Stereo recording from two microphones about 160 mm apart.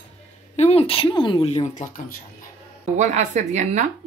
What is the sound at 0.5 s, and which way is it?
Speech, 40° left (ahead or behind).